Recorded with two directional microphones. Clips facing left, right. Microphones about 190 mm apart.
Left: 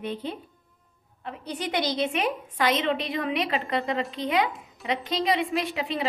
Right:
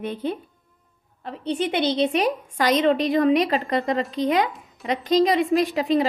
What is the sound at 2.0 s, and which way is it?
A woman's voice, 35° right (ahead or behind).